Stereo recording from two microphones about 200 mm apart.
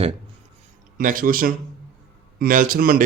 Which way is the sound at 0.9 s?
45° right (ahead or behind).